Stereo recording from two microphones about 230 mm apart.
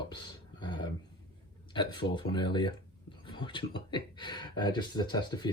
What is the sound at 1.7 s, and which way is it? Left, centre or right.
Speech, centre.